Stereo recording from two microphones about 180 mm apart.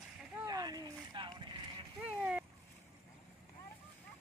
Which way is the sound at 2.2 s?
5° right (ahead or behind).